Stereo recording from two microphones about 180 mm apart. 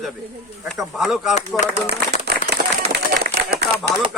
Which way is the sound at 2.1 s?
65° right (ahead or behind).